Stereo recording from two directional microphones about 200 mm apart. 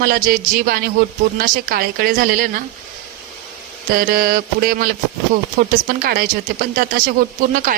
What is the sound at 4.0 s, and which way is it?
Speech, 45° right (ahead or behind).